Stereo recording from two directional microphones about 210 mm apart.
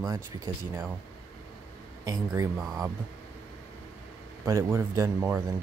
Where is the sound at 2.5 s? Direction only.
Centre (ahead or behind).